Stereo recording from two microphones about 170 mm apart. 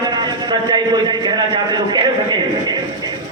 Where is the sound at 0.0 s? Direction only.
25° right (ahead or behind).